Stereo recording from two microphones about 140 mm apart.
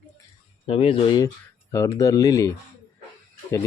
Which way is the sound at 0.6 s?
45° left (ahead or behind).